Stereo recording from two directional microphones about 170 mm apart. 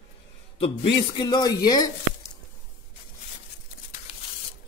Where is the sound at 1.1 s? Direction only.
25° left (ahead or behind).